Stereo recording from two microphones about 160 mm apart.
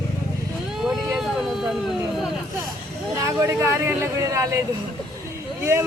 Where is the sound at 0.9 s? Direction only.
5° right (ahead or behind).